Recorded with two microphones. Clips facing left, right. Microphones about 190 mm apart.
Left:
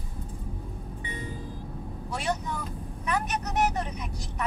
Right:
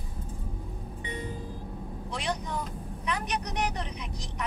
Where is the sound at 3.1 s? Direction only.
45° left (ahead or behind).